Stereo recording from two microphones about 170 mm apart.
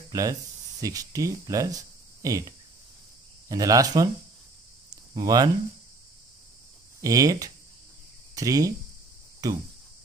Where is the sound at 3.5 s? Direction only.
20° right (ahead or behind).